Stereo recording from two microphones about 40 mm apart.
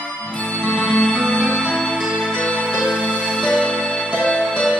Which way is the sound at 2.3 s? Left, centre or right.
Left.